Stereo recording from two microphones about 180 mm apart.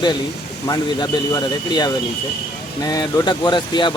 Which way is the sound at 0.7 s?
20° left (ahead or behind).